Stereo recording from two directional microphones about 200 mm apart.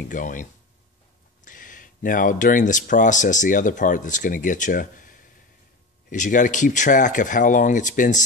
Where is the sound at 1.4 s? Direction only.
40° left (ahead or behind).